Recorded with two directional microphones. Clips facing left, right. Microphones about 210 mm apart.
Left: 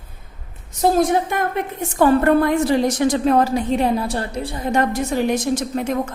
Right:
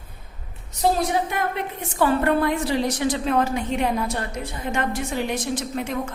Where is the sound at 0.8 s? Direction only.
50° left (ahead or behind).